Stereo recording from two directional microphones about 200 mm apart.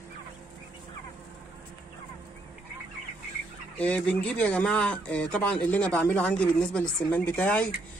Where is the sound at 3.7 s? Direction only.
5° left (ahead or behind).